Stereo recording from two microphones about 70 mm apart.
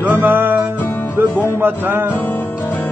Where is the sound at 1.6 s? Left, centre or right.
Right.